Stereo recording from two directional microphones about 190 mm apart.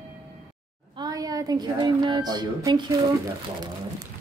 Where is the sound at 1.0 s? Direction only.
20° right (ahead or behind).